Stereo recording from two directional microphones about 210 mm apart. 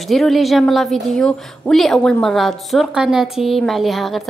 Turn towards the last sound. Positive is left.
turn(degrees=0)  # may be behind; listen again after turning